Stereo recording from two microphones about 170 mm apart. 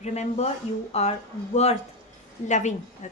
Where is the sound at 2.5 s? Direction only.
45° left (ahead or behind).